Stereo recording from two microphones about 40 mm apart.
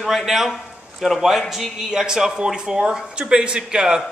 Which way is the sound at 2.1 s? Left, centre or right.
Centre.